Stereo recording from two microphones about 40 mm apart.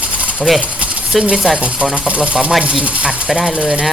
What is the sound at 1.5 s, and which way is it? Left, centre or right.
Speech, right.